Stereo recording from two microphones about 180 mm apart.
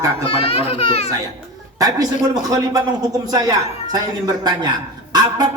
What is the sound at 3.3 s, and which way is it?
A man's voice, 20° right (ahead or behind).